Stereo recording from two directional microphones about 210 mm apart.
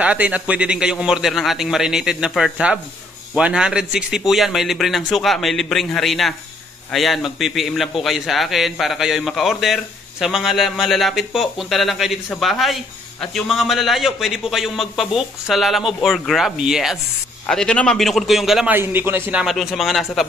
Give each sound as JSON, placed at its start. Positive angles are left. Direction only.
{"t": 0.0, "sound": "a man's voice", "side_deg": -5}